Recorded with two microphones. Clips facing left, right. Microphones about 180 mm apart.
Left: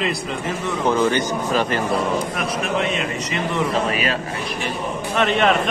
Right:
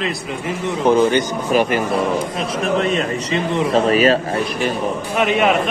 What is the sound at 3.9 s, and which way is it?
Speech, 35° right (ahead or behind).